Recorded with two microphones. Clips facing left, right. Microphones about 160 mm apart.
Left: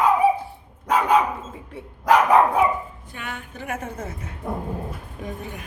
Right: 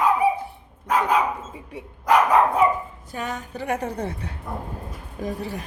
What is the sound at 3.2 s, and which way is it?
A woman's voice, 40° right (ahead or behind).